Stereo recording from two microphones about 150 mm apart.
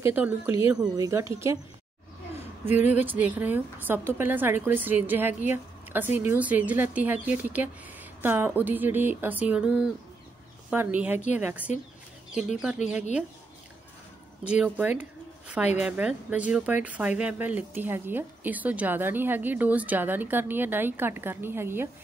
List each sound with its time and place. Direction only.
0.0 s a woman's voice: 10° right (ahead or behind)
3.1 s speech: 10° right (ahead or behind)
14.5 s speech: 10° right (ahead or behind)